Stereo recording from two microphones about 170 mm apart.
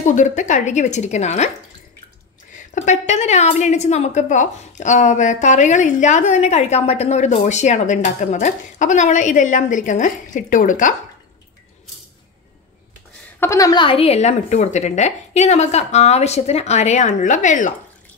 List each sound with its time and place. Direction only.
0.0 s a woman's voice: 45° left (ahead or behind)
2.5 s a woman's voice: 50° left (ahead or behind)
13.4 s a woman's voice: 20° left (ahead or behind); by 17.7 s 45° left (ahead or behind)